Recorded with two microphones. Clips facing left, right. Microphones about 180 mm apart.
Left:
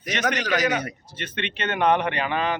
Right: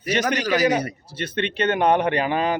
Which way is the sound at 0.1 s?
35° right (ahead or behind).